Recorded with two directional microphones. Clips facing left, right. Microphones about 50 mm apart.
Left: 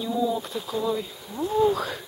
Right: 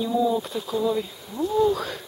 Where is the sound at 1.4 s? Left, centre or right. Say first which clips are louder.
Right 1 dB; left.